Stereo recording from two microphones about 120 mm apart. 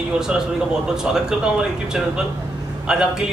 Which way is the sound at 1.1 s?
5° right (ahead or behind).